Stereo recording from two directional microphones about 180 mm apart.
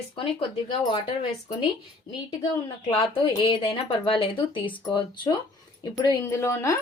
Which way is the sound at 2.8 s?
30° left (ahead or behind).